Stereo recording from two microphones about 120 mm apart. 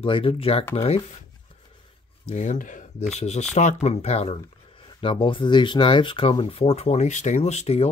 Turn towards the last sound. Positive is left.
turn(degrees=60)  # may be behind; listen again after turning